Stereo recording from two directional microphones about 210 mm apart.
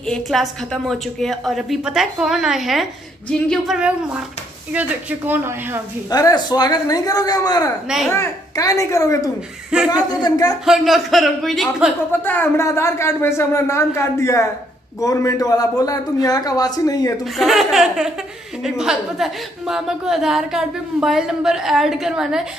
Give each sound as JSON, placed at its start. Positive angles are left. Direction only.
{"t": 0.0, "sound": "a woman's voice", "side_deg": 0}
{"t": 6.0, "sound": "speech", "side_deg": 15}
{"t": 9.7, "sound": "a woman's voice", "side_deg": -5}
{"t": 10.2, "sound": "speech", "side_deg": 15}
{"t": 10.6, "sound": "speech", "side_deg": 0}
{"t": 17.4, "sound": "a woman's voice", "side_deg": 0}